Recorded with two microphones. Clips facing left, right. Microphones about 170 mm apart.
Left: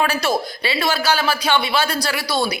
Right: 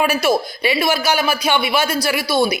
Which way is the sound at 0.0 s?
10° right (ahead or behind).